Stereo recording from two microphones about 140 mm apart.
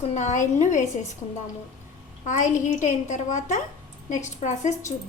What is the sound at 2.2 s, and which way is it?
A child's voice, 60° left (ahead or behind).